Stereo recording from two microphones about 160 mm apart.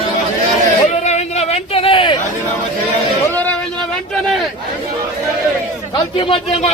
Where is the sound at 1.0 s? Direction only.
45° left (ahead or behind).